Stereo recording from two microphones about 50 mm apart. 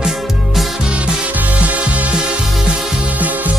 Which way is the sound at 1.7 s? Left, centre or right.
Right.